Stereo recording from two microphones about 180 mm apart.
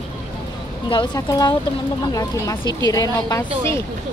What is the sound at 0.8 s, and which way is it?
A woman's voice, 25° left (ahead or behind).